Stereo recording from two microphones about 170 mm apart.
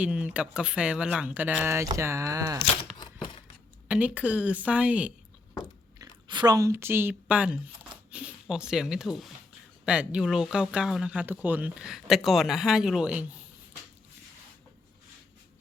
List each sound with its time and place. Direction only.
0.0 s speech: 10° right (ahead or behind)
3.0 s a sound: 25° left (ahead or behind)
3.8 s speech: 5° right (ahead or behind)
6.0 s speech: 25° right (ahead or behind); by 13.2 s 5° right (ahead or behind)